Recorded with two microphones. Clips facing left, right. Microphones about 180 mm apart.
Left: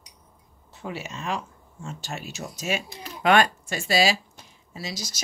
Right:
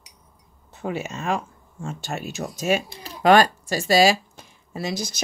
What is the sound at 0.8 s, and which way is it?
Speech, 45° right (ahead or behind).